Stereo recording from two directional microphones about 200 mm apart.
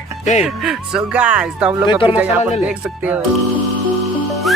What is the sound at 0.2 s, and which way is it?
Speech, 35° left (ahead or behind).